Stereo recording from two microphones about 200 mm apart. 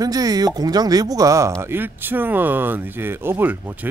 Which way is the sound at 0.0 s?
20° right (ahead or behind).